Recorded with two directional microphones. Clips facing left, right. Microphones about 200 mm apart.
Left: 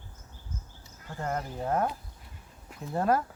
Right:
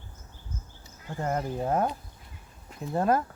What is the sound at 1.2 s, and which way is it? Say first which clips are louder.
Speech: right 4 dB; 20° right (ahead or behind).